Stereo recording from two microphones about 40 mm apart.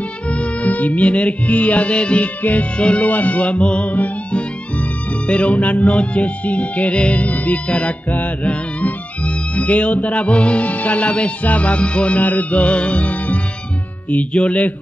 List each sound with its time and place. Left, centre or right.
0.3 s music: left
2.8 s speech: left
3.1 s music: left
8.5 s speech: left
12.2 s music: left